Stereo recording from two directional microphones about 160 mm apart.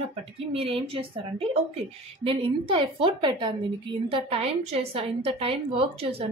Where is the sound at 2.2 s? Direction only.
30° right (ahead or behind).